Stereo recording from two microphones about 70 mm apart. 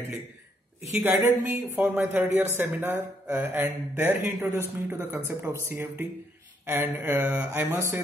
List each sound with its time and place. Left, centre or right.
0.9 s speech: right